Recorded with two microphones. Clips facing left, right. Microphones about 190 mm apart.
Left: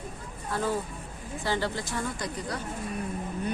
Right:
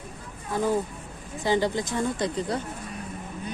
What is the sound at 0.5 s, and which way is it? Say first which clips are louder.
Speech: right 4 dB; 15° right (ahead or behind).